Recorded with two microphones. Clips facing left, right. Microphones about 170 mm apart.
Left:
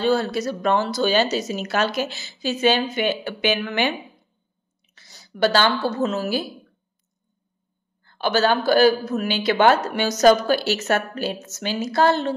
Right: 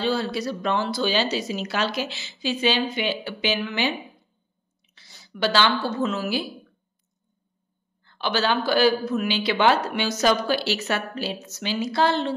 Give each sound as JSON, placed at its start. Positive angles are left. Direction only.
{"t": 0.0, "sound": "a woman's voice", "side_deg": 45}
{"t": 8.0, "sound": "speech", "side_deg": 45}